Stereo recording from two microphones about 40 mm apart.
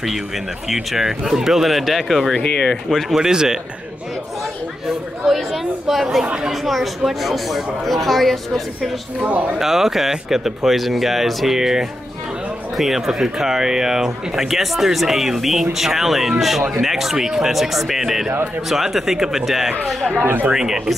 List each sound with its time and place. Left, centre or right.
0.7 s speech: centre
2.3 s speech: centre
2.9 s speech: centre
3.2 s speech: centre
5.2 s speech: centre
9.6 s speech: centre